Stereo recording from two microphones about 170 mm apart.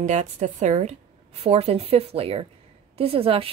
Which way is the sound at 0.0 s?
45° right (ahead or behind).